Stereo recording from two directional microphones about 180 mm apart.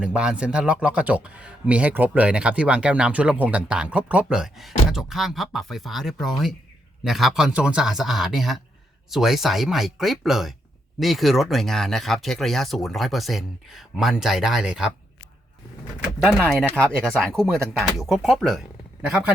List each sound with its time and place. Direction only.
0.0 s speech: 5° right (ahead or behind)
16.6 s speech: 5° left (ahead or behind)